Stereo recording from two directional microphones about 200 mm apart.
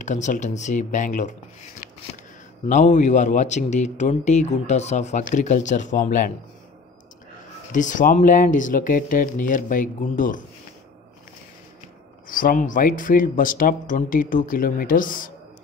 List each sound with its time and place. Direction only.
0.0 s speech: 40° left (ahead or behind)
2.7 s speech: 40° left (ahead or behind)
7.7 s speech: 40° left (ahead or behind)
12.3 s speech: 45° left (ahead or behind)